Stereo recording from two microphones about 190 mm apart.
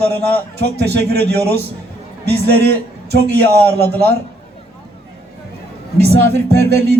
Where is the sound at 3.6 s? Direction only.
10° left (ahead or behind).